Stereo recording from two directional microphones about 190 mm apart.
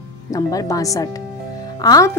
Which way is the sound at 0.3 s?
20° left (ahead or behind).